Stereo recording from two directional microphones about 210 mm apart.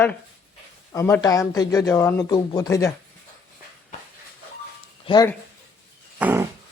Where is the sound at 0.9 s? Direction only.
15° left (ahead or behind).